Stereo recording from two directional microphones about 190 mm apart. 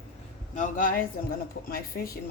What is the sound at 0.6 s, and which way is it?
Speech, 45° left (ahead or behind).